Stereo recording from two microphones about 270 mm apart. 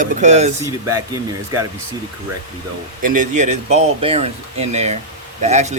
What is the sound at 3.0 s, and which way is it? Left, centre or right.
Speech, right.